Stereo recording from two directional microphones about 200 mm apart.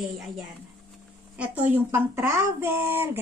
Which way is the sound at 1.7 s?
10° right (ahead or behind).